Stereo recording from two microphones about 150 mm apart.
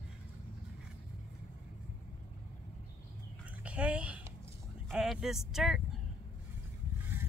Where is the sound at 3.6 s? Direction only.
10° right (ahead or behind).